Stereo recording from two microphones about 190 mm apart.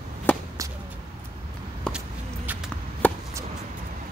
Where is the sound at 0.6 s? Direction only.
15° right (ahead or behind).